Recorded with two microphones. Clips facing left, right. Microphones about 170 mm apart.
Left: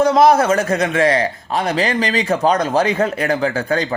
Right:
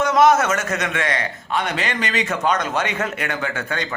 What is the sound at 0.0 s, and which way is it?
A man's voice, 35° left (ahead or behind).